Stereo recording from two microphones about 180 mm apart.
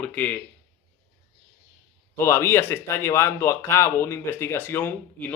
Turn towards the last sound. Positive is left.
turn(degrees=10)  # may be behind; listen again after turning